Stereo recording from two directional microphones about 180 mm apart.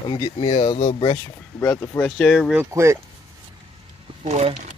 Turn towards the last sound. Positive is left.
turn(degrees=-40)  # may be behind; listen again after turning